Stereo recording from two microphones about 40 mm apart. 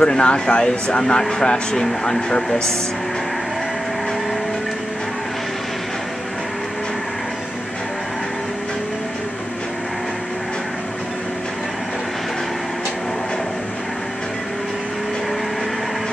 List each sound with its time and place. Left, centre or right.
0.0 s speech: left
1.9 s speech: centre